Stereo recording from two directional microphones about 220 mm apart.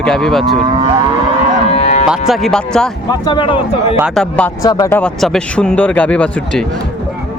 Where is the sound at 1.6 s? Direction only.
30° left (ahead or behind).